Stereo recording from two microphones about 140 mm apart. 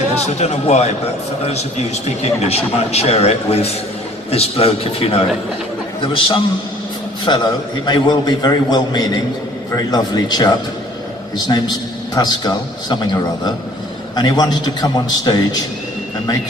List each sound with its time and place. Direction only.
0.4 s a man's voice: 50° left (ahead or behind); by 15.4 s 30° left (ahead or behind)